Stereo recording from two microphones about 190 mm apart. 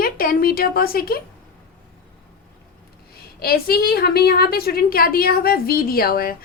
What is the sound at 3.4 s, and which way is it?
A woman's voice, 55° left (ahead or behind).